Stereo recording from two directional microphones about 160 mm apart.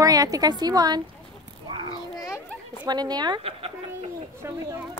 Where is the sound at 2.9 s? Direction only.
25° right (ahead or behind).